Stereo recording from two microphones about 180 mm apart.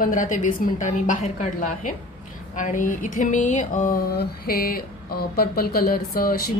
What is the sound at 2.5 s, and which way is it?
A woman's voice, 45° left (ahead or behind).